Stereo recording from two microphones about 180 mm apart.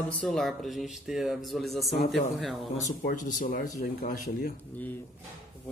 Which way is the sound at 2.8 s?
45° left (ahead or behind).